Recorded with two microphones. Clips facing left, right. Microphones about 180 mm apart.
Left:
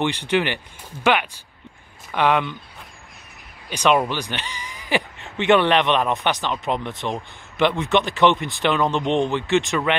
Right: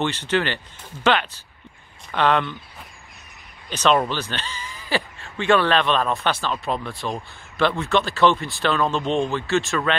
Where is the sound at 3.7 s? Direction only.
10° left (ahead or behind).